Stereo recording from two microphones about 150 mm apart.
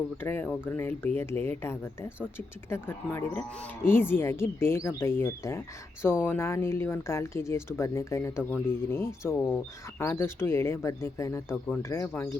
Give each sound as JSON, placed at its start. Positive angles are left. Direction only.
{"t": 0.2, "sound": "speech", "side_deg": 15}